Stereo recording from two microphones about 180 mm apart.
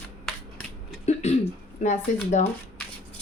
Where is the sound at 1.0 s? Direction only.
40° left (ahead or behind).